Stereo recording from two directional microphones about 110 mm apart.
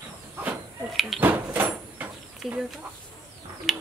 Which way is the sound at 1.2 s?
15° right (ahead or behind).